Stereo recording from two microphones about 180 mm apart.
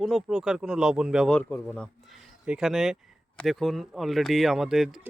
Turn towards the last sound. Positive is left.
turn(degrees=0)  # may be behind; listen again after turning